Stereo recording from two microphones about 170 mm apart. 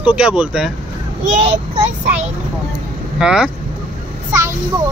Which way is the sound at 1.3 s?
40° right (ahead or behind).